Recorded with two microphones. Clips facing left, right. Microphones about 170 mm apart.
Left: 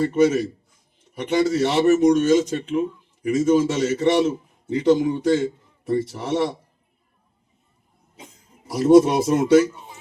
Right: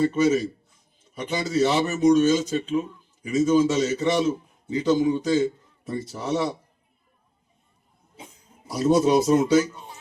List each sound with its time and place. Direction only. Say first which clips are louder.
0.0 s a man's voice: left 2 dB; 65° left (ahead or behind)
8.7 s a man's voice: left 5 dB; 65° left (ahead or behind)